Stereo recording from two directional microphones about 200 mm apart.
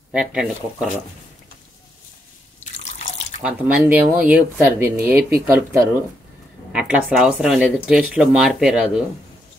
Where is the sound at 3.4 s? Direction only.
5° right (ahead or behind).